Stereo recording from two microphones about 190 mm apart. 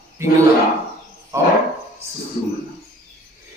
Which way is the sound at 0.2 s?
15° right (ahead or behind).